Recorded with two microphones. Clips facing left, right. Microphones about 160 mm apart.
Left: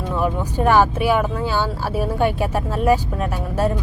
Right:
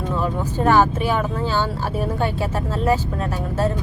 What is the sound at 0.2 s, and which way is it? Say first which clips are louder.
Speech: left 3 dB; 10° left (ahead or behind).